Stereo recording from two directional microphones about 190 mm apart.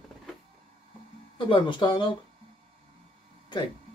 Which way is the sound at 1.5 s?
25° left (ahead or behind).